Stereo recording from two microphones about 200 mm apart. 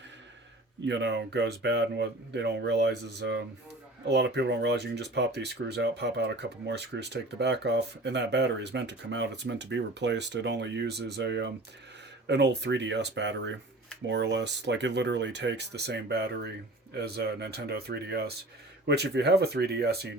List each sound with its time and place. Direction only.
0.9 s speech: 60° right (ahead or behind)